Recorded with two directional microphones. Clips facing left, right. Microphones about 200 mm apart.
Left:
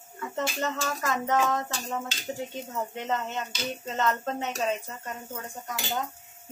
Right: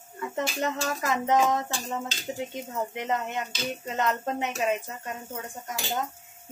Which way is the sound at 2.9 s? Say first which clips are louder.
Right 1 dB; 15° right (ahead or behind).